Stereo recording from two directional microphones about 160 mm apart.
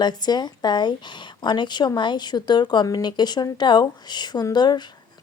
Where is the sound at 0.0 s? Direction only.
25° left (ahead or behind).